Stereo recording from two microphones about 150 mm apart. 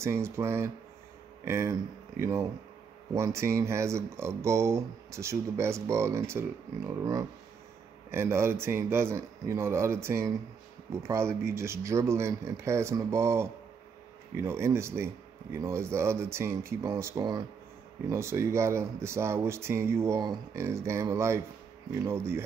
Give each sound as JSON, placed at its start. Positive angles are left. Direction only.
{"t": 0.0, "sound": "speech", "side_deg": -20}